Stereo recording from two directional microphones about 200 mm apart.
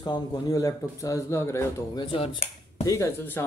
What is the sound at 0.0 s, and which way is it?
A man's voice, 20° left (ahead or behind).